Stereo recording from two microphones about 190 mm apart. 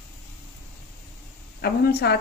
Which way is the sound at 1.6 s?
60° left (ahead or behind).